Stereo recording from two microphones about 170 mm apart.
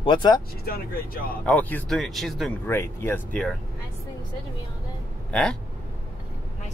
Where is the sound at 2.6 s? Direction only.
15° left (ahead or behind).